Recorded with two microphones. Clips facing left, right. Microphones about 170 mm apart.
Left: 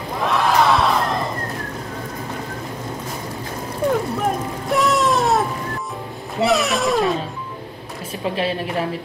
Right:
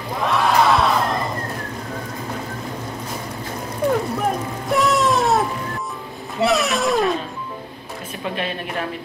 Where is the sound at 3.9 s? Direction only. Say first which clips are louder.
Even; centre (ahead or behind).